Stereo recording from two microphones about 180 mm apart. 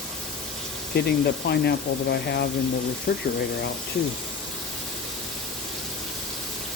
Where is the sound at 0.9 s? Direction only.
65° left (ahead or behind).